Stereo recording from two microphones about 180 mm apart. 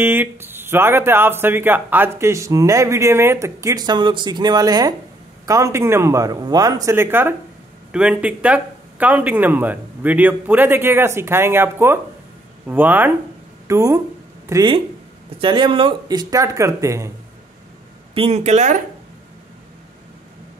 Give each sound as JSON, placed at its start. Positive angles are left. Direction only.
{"t": 0.0, "sound": "speech", "side_deg": -10}
{"t": 18.1, "sound": "speech", "side_deg": -35}